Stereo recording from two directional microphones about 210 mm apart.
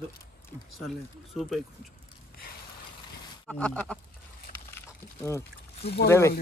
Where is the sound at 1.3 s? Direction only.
Centre (ahead or behind).